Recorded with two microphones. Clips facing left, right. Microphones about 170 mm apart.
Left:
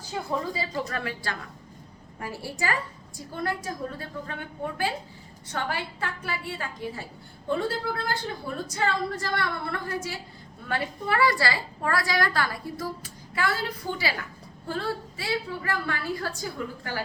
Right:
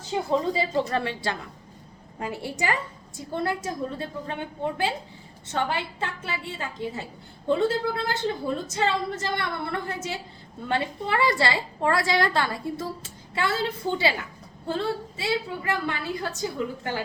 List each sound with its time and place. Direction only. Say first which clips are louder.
0.0 s a woman's voice: right 5 dB; 20° right (ahead or behind)